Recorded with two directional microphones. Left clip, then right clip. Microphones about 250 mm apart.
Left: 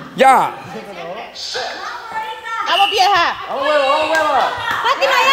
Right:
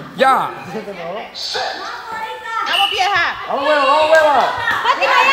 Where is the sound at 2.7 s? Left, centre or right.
Left.